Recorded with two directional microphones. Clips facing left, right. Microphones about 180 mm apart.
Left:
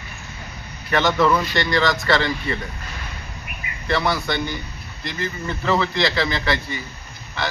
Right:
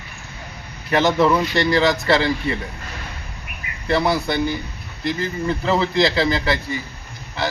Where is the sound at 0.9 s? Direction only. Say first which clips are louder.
Right 2 dB; 30° right (ahead or behind).